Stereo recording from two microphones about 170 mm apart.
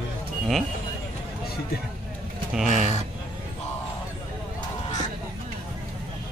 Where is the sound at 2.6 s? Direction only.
45° right (ahead or behind).